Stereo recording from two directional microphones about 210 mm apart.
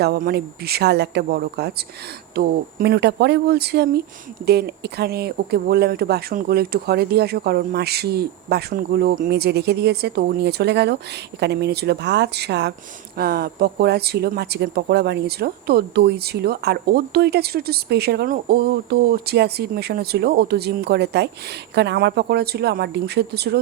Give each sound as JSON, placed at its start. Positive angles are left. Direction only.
{"t": 0.0, "sound": "speech", "side_deg": -50}